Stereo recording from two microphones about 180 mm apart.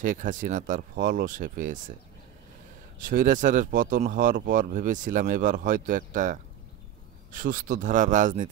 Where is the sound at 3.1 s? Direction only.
45° right (ahead or behind).